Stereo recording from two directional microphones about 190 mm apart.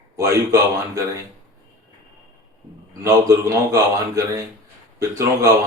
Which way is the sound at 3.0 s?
15° right (ahead or behind).